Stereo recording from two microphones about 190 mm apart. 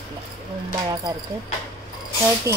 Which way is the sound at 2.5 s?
20° left (ahead or behind).